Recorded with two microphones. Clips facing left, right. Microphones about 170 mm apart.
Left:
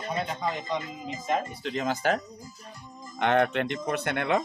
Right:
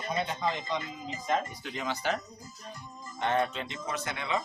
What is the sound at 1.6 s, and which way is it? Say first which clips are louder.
Speech: left 6 dB; 40° left (ahead or behind).